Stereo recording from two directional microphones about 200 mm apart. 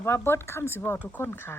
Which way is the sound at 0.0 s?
10° left (ahead or behind).